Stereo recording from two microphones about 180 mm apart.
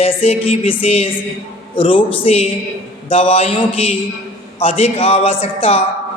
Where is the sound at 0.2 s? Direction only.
30° left (ahead or behind).